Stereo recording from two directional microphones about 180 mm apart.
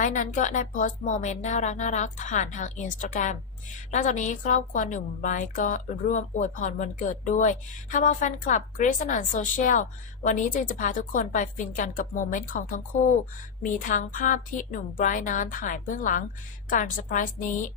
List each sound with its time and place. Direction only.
0.0 s a woman's voice: 45° left (ahead or behind)